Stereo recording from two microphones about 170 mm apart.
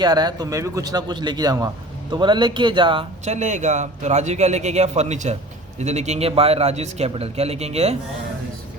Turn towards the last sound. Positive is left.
turn(degrees=-40)  # may be behind; listen again after turning